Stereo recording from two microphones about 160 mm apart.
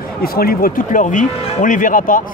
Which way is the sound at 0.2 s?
70° left (ahead or behind).